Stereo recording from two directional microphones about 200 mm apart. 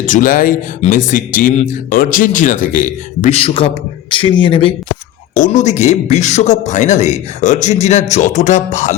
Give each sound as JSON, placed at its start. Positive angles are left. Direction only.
{"t": 0.0, "sound": "speech", "side_deg": 40}
{"t": 5.3, "sound": "speech", "side_deg": 40}